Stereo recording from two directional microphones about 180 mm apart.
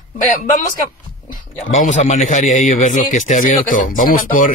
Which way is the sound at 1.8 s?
40° left (ahead or behind).